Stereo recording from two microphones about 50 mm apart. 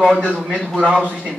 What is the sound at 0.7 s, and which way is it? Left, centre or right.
Speech, centre.